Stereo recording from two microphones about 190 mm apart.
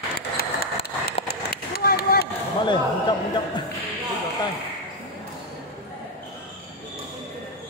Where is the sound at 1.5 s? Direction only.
50° left (ahead or behind).